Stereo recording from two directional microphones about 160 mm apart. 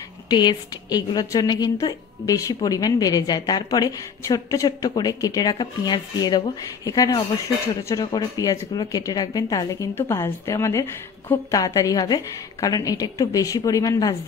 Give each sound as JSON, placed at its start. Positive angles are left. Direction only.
{"t": 0.3, "sound": "a woman's voice", "side_deg": 25}